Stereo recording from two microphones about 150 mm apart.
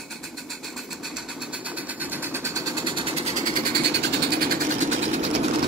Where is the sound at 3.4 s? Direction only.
65° right (ahead or behind).